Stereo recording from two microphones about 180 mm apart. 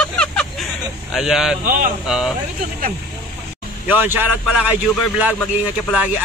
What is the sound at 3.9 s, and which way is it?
Speech, 10° right (ahead or behind).